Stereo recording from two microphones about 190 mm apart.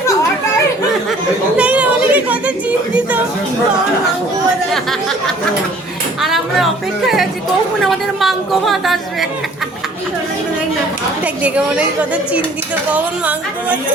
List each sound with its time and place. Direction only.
1.5 s a sound: 5° right (ahead or behind)
4.7 s chatter: centre (ahead or behind)
6.2 s music: centre (ahead or behind)
7.9 s a woman's voice: centre (ahead or behind)
11.4 s a woman's voice: 5° right (ahead or behind)